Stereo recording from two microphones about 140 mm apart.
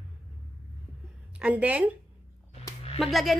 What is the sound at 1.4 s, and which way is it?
Speech, 10° right (ahead or behind).